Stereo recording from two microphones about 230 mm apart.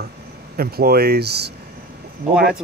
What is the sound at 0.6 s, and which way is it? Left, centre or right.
Speech, right.